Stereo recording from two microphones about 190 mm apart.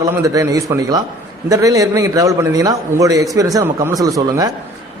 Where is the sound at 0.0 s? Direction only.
15° right (ahead or behind).